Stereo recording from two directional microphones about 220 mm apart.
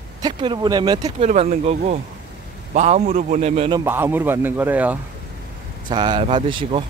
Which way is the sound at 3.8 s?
10° right (ahead or behind).